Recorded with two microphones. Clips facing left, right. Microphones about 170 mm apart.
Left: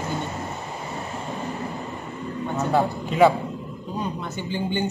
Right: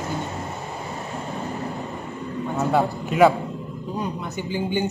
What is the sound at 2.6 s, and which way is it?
Speech, 5° right (ahead or behind).